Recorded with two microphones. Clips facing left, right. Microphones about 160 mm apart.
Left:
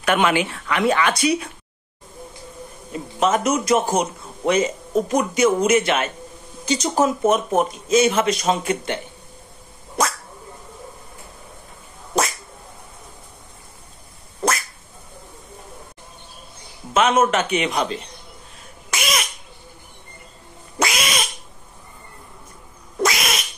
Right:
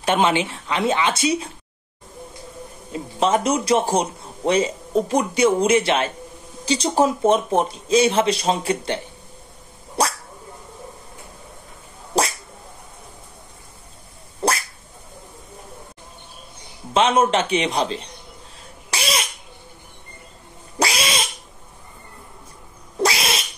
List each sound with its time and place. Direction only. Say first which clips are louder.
0.0 s speech: even; 25° right (ahead or behind)
2.9 s a man's voice: even; 30° right (ahead or behind)
10.0 s dog: even; 30° right (ahead or behind)
12.1 s cat: right 1 dB; 35° right (ahead or behind)
16.9 s speech: even; 30° right (ahead or behind)
18.9 s laughter: even; 30° right (ahead or behind)
20.8 s a sound: even; 30° right (ahead or behind)
23.0 s cat: even; 30° right (ahead or behind)